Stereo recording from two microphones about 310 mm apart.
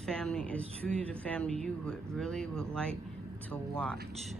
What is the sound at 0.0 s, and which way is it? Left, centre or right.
Speech, centre.